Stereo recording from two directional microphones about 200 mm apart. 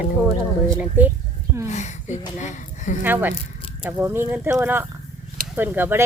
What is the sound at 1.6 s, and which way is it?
Speech, 35° left (ahead or behind).